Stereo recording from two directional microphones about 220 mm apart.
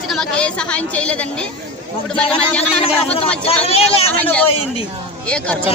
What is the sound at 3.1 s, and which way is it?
Speech, 25° left (ahead or behind).